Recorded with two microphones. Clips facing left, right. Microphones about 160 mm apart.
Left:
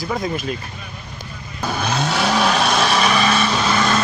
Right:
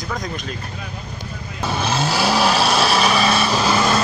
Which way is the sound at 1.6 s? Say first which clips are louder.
Even; centre (ahead or behind).